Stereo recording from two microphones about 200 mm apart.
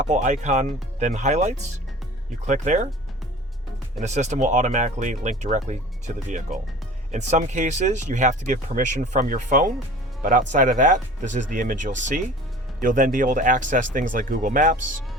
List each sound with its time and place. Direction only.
0.0 s speech: 35° right (ahead or behind)
4.0 s speech: 35° right (ahead or behind)